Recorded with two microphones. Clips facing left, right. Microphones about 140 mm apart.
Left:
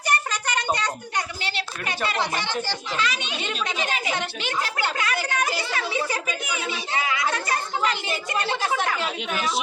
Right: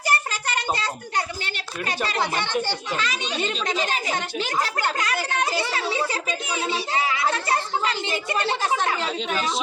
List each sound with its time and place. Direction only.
1.5 s a child's voice: 40° right (ahead or behind)